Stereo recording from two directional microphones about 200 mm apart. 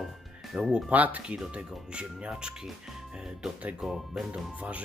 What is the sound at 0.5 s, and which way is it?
Speech, centre (ahead or behind).